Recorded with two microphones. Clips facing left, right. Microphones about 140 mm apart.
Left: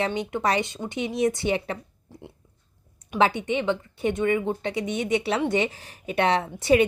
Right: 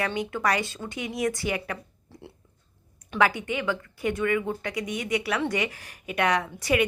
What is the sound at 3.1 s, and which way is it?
A woman's voice, 25° left (ahead or behind).